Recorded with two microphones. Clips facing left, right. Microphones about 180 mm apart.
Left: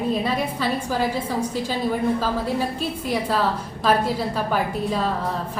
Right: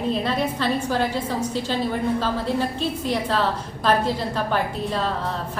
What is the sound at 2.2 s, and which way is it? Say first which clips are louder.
A woman's voice: even; 10° left (ahead or behind).